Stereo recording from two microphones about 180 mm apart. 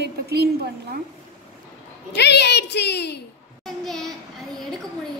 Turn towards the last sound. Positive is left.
turn(degrees=0)  # may be behind; listen again after turning